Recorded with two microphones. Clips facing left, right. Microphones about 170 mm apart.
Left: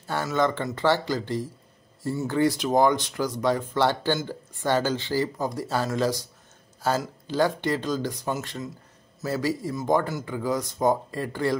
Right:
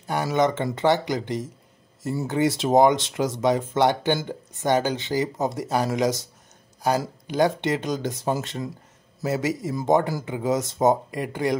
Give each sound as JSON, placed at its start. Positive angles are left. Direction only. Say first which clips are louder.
{"t": 0.0, "sound": "speech", "louder": "right 3 dB", "side_deg": -15}